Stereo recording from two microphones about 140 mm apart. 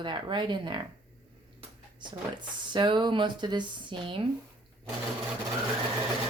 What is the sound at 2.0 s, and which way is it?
Speech, 35° right (ahead or behind).